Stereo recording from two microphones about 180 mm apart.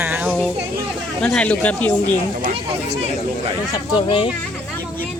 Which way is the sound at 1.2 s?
5° left (ahead or behind).